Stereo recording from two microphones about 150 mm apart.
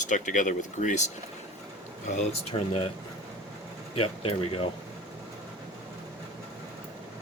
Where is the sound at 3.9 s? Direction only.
40° left (ahead or behind).